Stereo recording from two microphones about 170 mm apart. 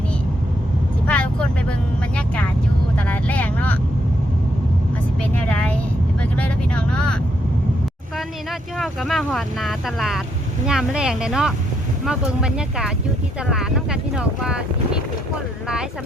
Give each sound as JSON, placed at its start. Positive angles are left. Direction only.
{"t": 1.0, "sound": "vehicle", "side_deg": 5}
{"t": 5.3, "sound": "vehicle", "side_deg": 5}
{"t": 8.8, "sound": "speech", "side_deg": 0}
{"t": 13.5, "sound": "boat", "side_deg": 0}